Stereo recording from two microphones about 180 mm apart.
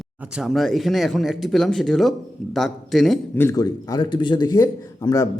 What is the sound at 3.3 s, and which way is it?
A man's voice, 15° left (ahead or behind).